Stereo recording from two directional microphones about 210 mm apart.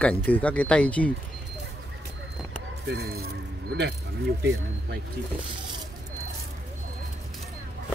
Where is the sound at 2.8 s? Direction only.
50° right (ahead or behind).